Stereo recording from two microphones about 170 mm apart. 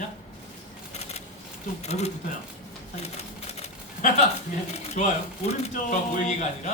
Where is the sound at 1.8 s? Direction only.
40° left (ahead or behind).